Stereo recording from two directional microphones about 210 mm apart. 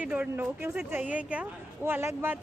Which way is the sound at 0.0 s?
5° right (ahead or behind).